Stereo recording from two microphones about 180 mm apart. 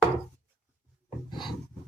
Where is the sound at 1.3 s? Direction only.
25° left (ahead or behind).